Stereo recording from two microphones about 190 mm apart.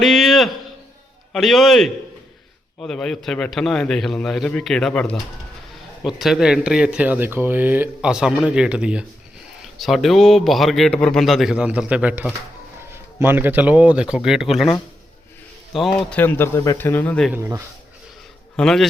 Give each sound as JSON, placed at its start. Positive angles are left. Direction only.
{"t": 0.0, "sound": "a man's voice", "side_deg": 0}
{"t": 17.3, "sound": "speech", "side_deg": -10}
{"t": 18.5, "sound": "speech", "side_deg": 5}